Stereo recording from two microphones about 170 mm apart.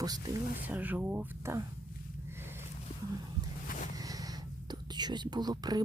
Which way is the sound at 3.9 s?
20° right (ahead or behind).